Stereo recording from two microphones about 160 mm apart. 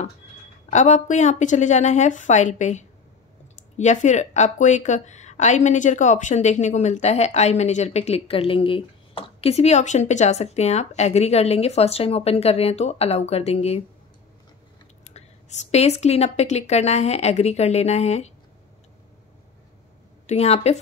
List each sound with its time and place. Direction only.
0.7 s speech: 45° left (ahead or behind)
15.1 s speech: 45° left (ahead or behind)
20.2 s a woman's voice: 40° left (ahead or behind)